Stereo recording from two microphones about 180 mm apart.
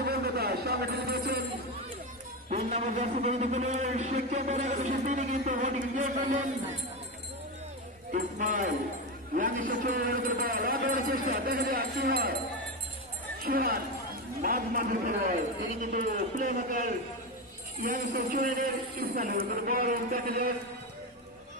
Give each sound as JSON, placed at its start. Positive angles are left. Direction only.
{"t": 0.0, "sound": "a sound", "side_deg": -60}
{"t": 2.5, "sound": "a man's voice", "side_deg": -35}
{"t": 8.1, "sound": "a man's voice", "side_deg": -45}
{"t": 13.4, "sound": "a man's voice", "side_deg": -55}